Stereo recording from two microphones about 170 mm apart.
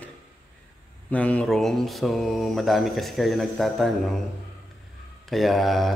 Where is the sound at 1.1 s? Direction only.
10° left (ahead or behind).